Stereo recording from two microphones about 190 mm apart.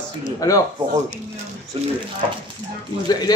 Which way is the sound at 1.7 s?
35° right (ahead or behind).